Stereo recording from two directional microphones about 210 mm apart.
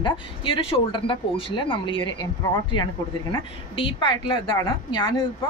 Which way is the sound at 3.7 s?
25° left (ahead or behind).